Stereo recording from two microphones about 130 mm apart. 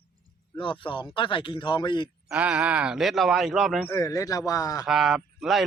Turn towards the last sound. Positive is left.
turn(degrees=0)  # may be behind; listen again after turning